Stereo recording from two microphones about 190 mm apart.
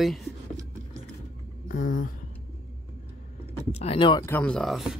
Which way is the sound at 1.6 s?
45° left (ahead or behind).